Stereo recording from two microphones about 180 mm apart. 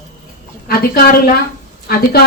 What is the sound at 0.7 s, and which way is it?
Speech, 55° left (ahead or behind).